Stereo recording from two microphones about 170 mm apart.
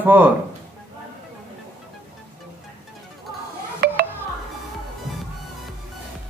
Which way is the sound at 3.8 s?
65° right (ahead or behind).